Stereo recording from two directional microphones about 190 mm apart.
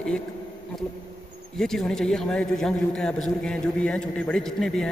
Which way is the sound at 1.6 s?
Centre (ahead or behind).